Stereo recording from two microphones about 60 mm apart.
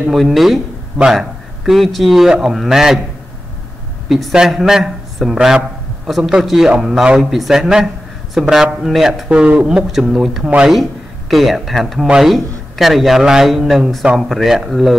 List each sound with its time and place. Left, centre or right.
0.1 s speech: centre
4.1 s a man's voice: centre
9.3 s speech: right
9.9 s speech: centre
10.4 s speech: centre
10.7 s speech: centre